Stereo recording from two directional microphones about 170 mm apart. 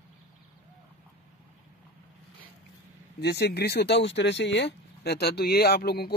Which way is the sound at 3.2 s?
75° left (ahead or behind).